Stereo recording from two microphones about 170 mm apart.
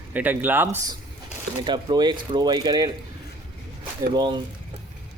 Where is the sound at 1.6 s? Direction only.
25° right (ahead or behind).